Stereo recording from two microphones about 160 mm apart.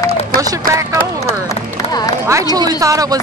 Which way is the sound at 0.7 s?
20° right (ahead or behind).